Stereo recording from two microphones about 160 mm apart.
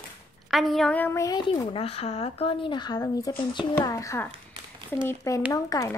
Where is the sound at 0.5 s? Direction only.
Centre (ahead or behind).